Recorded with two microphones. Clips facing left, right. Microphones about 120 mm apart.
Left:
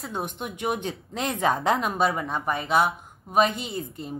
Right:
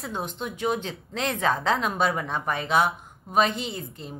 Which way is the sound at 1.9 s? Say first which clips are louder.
Left 1 dB; centre (ahead or behind).